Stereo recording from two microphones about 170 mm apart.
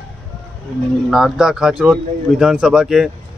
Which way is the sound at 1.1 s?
5° right (ahead or behind).